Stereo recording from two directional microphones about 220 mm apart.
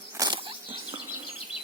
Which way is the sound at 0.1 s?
20° right (ahead or behind).